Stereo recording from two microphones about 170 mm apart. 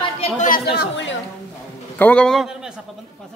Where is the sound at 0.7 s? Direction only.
90° left.